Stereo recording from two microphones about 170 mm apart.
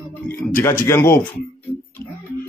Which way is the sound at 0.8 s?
15° left (ahead or behind).